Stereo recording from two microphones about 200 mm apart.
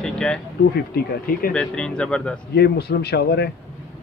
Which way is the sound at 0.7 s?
50° left (ahead or behind).